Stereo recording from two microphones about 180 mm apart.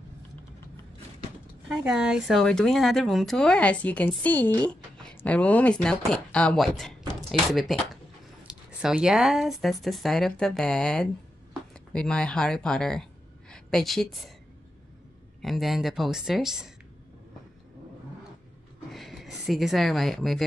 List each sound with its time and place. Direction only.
1.7 s speech: 5° right (ahead or behind)
15.4 s speech: centre (ahead or behind)
18.9 s a sound: centre (ahead or behind)